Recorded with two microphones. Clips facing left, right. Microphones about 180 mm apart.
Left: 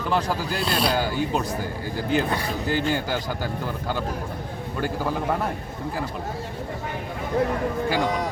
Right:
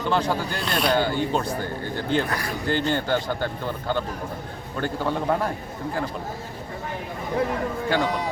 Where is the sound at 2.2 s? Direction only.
25° left (ahead or behind).